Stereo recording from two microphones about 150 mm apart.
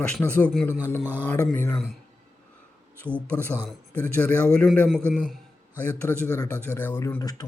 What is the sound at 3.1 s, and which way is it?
A man's voice, 10° left (ahead or behind).